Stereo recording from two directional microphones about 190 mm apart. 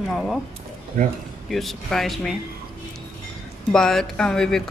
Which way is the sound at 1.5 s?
Centre (ahead or behind).